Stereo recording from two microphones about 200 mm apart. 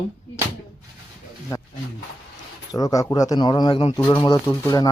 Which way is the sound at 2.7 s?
15° left (ahead or behind).